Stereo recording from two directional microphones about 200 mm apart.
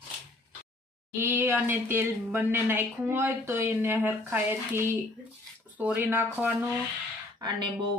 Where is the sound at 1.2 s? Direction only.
10° right (ahead or behind).